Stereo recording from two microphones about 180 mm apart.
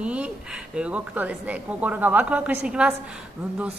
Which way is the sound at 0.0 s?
5° right (ahead or behind).